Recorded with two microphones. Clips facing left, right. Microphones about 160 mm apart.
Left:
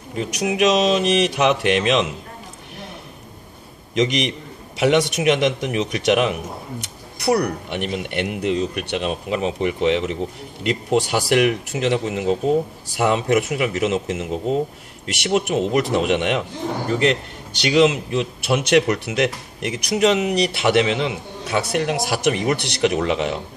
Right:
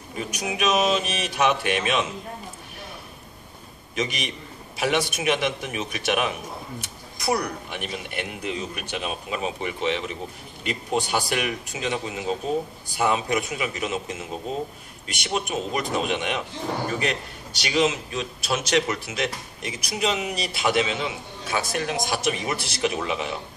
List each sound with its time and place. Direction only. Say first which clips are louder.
0.2 s speech: left 7 dB; 75° left (ahead or behind)
3.9 s a man's voice: left 9 dB; 85° left
6.8 s speech: left 5 dB; 70° left (ahead or behind)
17.6 s speech: left 7 dB; 70° left (ahead or behind)